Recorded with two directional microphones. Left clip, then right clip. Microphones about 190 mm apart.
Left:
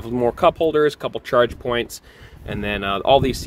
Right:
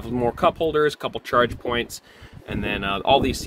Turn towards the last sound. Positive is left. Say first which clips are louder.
# left 3 dB
turn(degrees=20)  # may be behind; listen again after turning